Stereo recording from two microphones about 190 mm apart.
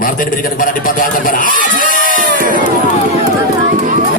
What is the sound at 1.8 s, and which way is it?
Crowd, 45° left (ahead or behind).